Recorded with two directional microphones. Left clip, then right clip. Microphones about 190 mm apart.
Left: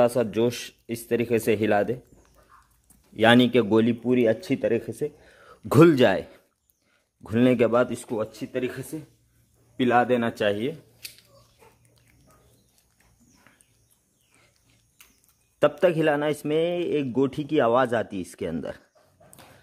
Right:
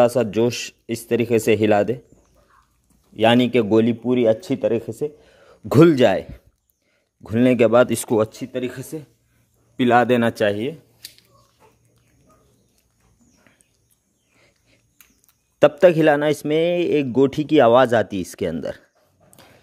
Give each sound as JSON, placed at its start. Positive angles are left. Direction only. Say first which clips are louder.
{"t": 0.0, "sound": "a man's voice", "louder": "right 5 dB", "side_deg": -30}
{"t": 3.2, "sound": "a man's voice", "louder": "right 2 dB", "side_deg": -10}
{"t": 7.9, "sound": "speech", "louder": "right 10 dB", "side_deg": -55}
{"t": 9.8, "sound": "speech", "louder": "right 5 dB", "side_deg": -55}
{"t": 15.6, "sound": "a man's voice", "louder": "right 7 dB", "side_deg": -25}
{"t": 19.4, "sound": "dog", "louder": "right 2 dB", "side_deg": -10}